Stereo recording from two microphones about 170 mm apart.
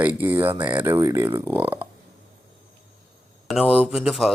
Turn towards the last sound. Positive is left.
turn(degrees=0)  # may be behind; listen again after turning